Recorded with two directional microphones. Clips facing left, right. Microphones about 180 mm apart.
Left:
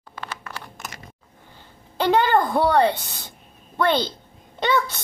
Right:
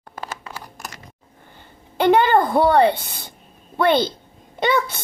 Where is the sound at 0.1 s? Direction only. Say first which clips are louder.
Right 3 dB; 45° right (ahead or behind).